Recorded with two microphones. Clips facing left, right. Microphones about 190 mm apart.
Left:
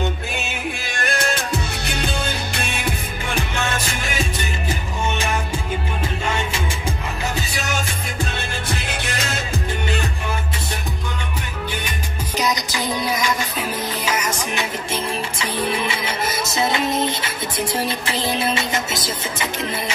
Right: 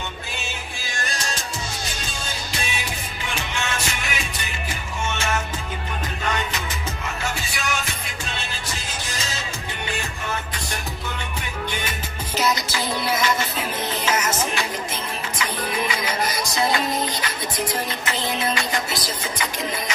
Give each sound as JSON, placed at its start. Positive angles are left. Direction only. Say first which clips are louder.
{"t": 0.7, "sound": "music", "louder": "left 5 dB", "side_deg": 60}
{"t": 5.1, "sound": "music", "louder": "even", "side_deg": 15}
{"t": 6.2, "sound": "music", "louder": "even", "side_deg": 25}
{"t": 8.6, "sound": "music", "louder": "left 6 dB", "side_deg": 65}
{"t": 12.4, "sound": "music", "louder": "even", "side_deg": 15}
{"t": 17.2, "sound": "music", "louder": "left 2 dB", "side_deg": 10}
{"t": 18.7, "sound": "music", "louder": "left 2 dB", "side_deg": 20}